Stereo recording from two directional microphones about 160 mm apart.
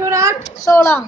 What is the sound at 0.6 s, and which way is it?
Speech, 15° left (ahead or behind).